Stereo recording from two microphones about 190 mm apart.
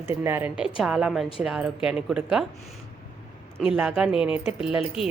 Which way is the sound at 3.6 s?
5° right (ahead or behind).